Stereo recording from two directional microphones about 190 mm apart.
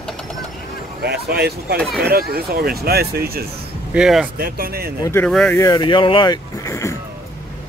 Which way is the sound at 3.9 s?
5° right (ahead or behind).